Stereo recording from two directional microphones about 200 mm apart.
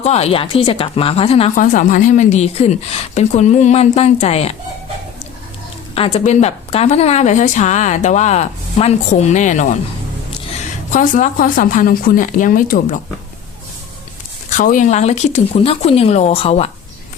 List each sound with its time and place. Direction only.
0.0 s speech: 30° left (ahead or behind)
5.9 s speech: 30° left (ahead or behind)
10.9 s speech: 40° left (ahead or behind)
14.5 s speech: 40° left (ahead or behind)